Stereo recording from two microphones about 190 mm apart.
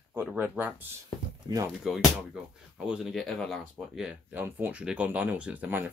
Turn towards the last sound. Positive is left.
turn(degrees=-10)  # may be behind; listen again after turning